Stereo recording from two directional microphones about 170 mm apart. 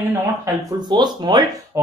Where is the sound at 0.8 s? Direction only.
25° right (ahead or behind).